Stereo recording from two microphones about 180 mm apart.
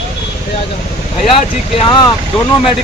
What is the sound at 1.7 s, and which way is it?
Speech, 30° left (ahead or behind).